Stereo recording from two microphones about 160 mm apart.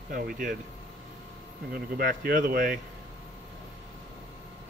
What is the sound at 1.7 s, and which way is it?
Speech, 65° right (ahead or behind).